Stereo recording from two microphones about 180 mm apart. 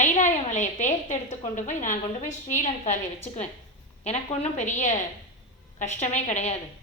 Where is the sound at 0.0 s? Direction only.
40° left (ahead or behind).